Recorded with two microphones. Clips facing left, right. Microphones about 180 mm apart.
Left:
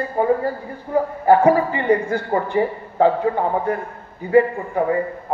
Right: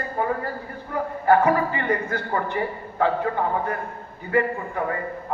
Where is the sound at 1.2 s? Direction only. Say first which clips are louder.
Left 4 dB; 25° left (ahead or behind).